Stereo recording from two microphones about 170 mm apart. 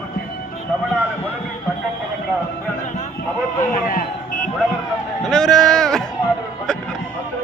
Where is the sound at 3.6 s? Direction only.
55° left (ahead or behind).